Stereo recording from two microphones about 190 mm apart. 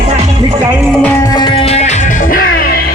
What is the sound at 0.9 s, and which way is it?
Music, 5° left (ahead or behind).